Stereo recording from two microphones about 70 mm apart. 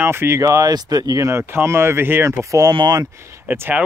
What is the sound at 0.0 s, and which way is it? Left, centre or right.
Speech, right.